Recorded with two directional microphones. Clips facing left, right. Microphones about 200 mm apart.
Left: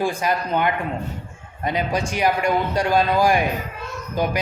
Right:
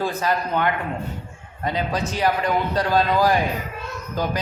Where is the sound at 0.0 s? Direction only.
10° left (ahead or behind).